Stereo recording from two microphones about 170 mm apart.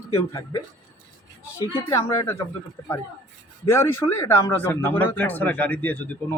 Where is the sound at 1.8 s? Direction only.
15° left (ahead or behind).